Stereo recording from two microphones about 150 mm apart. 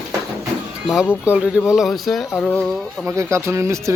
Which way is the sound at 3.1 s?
20° right (ahead or behind).